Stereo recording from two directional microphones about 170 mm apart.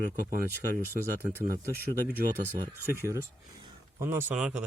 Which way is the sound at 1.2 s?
15° right (ahead or behind).